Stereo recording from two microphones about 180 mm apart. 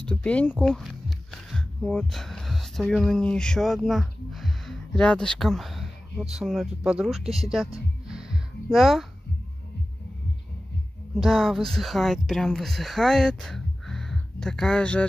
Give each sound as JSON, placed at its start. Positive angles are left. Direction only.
{"t": 0.0, "sound": "speech", "side_deg": 5}
{"t": 11.1, "sound": "speech", "side_deg": 0}